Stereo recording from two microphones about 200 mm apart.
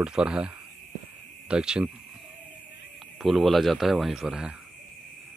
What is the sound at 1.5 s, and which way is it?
Speech, 5° right (ahead or behind).